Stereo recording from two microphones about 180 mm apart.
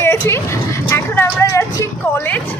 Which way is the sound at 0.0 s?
15° left (ahead or behind).